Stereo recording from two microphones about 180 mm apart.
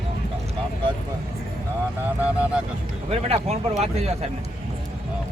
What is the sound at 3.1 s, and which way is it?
Speech, 35° right (ahead or behind).